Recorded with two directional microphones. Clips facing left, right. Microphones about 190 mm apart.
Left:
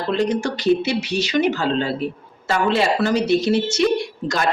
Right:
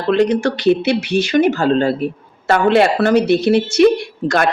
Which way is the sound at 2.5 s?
60° right (ahead or behind).